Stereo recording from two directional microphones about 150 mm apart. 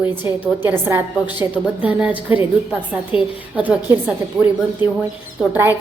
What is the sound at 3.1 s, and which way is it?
Speech, 35° left (ahead or behind).